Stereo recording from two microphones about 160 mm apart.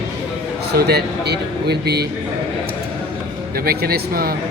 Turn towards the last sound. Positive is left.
turn(degrees=-70)  # may be behind; listen again after turning